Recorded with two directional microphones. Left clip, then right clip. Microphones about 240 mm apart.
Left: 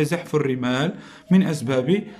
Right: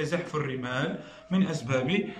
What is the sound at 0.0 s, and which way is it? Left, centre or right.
A man's voice, left.